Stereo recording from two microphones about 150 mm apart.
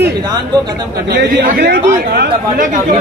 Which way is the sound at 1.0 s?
90° right.